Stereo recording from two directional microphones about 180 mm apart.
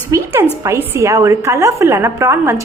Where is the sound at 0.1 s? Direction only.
15° right (ahead or behind).